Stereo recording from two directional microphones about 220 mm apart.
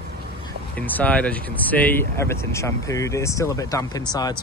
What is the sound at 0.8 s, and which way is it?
Speech, 5° left (ahead or behind).